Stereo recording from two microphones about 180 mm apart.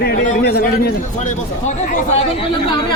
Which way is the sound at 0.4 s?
65° left (ahead or behind).